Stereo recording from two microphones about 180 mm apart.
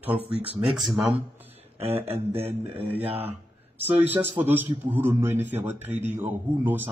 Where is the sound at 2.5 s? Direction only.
10° right (ahead or behind).